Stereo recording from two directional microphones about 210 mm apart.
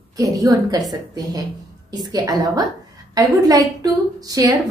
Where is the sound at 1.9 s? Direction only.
20° right (ahead or behind).